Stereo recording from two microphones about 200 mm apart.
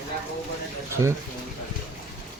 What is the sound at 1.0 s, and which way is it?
Speech, 15° right (ahead or behind).